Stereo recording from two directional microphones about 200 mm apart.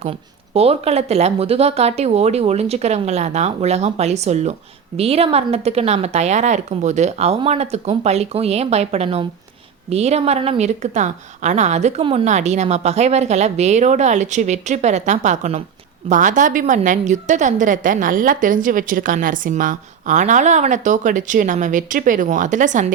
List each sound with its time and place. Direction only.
0.0 s a woman's voice: 30° right (ahead or behind)